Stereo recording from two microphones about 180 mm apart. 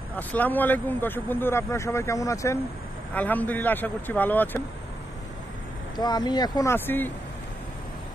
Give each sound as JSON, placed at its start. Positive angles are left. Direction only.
{"t": 0.1, "sound": "speech", "side_deg": 10}
{"t": 5.9, "sound": "speech", "side_deg": 25}